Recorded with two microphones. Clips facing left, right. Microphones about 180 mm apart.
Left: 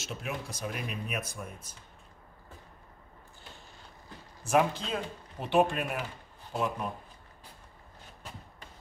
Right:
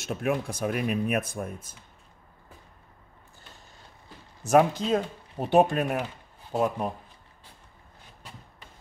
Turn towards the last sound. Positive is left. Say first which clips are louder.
# right 6 dB
turn(degrees=-35)  # may be behind; listen again after turning